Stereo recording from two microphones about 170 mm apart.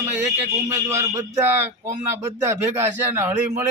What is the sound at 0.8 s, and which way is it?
A man's voice, 15° right (ahead or behind).